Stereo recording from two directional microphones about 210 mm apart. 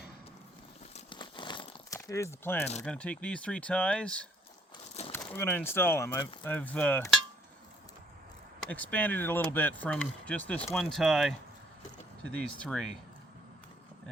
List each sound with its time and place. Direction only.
0.9 s crumpling: 25° left (ahead or behind)
2.8 s speech: 5° left (ahead or behind)
8.6 s speech: 5° left (ahead or behind)
12.4 s speech: centre (ahead or behind)